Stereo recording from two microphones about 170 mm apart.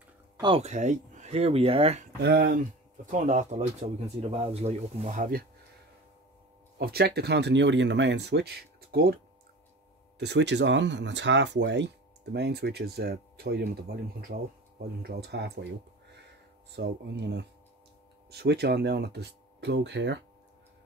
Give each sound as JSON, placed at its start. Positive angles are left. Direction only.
{"t": 0.4, "sound": "speech", "side_deg": -35}
{"t": 2.2, "sound": "speech", "side_deg": -80}
{"t": 3.1, "sound": "speech", "side_deg": -45}
{"t": 6.8, "sound": "speech", "side_deg": -70}
{"t": 10.1, "sound": "speech", "side_deg": -85}